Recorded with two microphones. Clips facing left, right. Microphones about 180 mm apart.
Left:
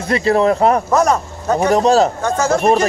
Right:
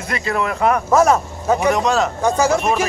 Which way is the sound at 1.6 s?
35° left (ahead or behind).